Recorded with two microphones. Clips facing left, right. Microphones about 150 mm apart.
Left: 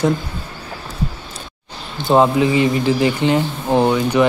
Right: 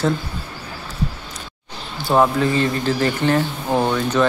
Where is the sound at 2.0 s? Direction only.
20° left (ahead or behind).